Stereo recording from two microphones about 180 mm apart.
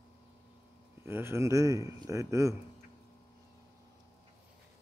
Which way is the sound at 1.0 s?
15° right (ahead or behind).